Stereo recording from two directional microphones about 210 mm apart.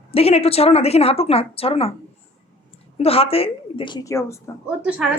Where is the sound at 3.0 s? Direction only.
30° left (ahead or behind).